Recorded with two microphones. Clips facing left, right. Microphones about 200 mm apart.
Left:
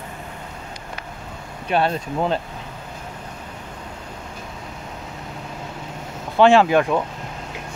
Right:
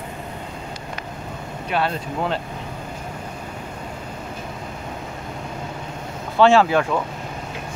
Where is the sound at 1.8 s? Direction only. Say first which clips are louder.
Left 2 dB; 20° left (ahead or behind).